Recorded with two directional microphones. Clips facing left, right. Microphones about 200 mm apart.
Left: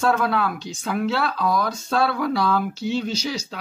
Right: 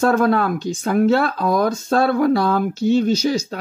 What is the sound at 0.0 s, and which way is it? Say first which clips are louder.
Speech: right 5 dB; 45° right (ahead or behind).